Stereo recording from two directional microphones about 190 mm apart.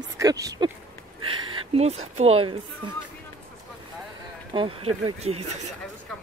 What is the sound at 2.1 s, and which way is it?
Speech, 30° right (ahead or behind).